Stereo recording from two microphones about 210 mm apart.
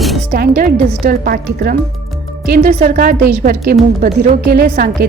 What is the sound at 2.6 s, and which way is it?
A woman's voice, 35° right (ahead or behind).